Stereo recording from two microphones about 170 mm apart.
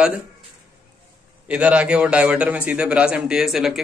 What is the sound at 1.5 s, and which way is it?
A man's voice, 5° right (ahead or behind).